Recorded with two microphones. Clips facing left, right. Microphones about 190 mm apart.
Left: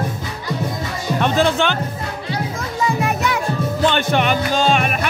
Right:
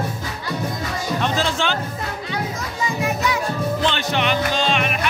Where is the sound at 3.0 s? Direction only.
60° left (ahead or behind).